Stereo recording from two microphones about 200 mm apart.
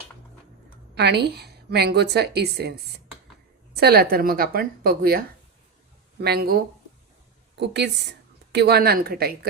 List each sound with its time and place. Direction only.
0.9 s a woman's voice: 55° right (ahead or behind)
3.8 s a woman's voice: 50° right (ahead or behind)
6.2 s a woman's voice: 50° right (ahead or behind)